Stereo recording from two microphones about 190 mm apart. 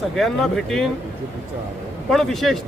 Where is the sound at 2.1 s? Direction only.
Centre (ahead or behind).